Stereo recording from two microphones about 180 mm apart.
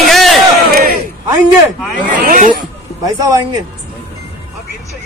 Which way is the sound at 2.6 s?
20° right (ahead or behind).